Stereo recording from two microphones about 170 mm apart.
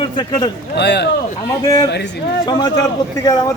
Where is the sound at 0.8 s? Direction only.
75° left (ahead or behind).